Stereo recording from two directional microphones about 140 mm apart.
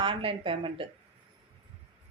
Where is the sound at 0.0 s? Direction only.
40° right (ahead or behind).